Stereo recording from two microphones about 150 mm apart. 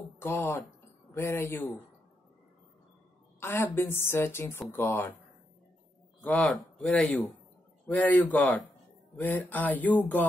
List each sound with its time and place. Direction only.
0.2 s a woman's voice: 15° left (ahead or behind)
3.3 s a woman's voice: 15° left (ahead or behind)
6.2 s a woman's voice: 10° left (ahead or behind)